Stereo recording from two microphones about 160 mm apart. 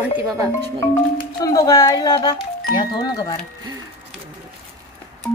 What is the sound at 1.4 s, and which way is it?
Speech, 25° left (ahead or behind).